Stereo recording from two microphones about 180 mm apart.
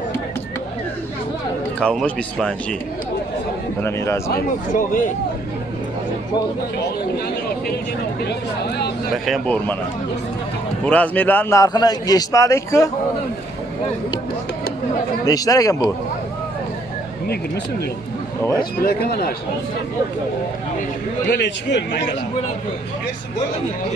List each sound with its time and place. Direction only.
1.8 s a man's voice: 5° left (ahead or behind)
3.8 s a man's voice: 15° left (ahead or behind)
8.3 s speech: 65° left (ahead or behind)
9.1 s a man's voice: centre (ahead or behind)
10.9 s a man's voice: 10° left (ahead or behind)
15.2 s a man's voice: 20° left (ahead or behind)
18.4 s a man's voice: 20° left (ahead or behind)
18.8 s speech: 60° left (ahead or behind)
21.3 s speech: 75° left (ahead or behind)